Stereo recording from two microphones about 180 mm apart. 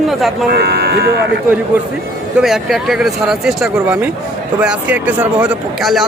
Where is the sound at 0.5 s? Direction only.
65° right (ahead or behind).